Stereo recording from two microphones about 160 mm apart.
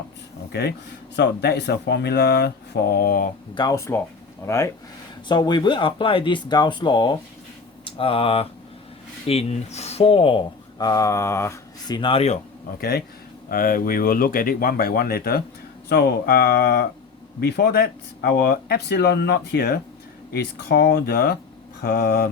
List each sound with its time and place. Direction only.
1.1 s speech: 90° left; by 3.3 s 65° left (ahead or behind)
3.5 s speech: 25° left (ahead or behind)
5.3 s speech: 30° left (ahead or behind)
13.5 s speech: 65° left (ahead or behind)
15.9 s speech: 90° left; by 16.8 s 75° left (ahead or behind)
17.4 s speech: 90° left